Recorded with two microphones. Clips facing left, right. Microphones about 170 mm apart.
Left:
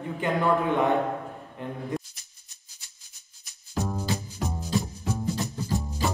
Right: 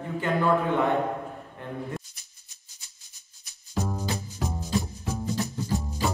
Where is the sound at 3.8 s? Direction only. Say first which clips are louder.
Left 1 dB; centre (ahead or behind).